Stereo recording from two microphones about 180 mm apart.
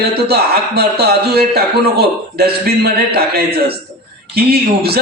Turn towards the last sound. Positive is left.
turn(degrees=-60)  # may be behind; listen again after turning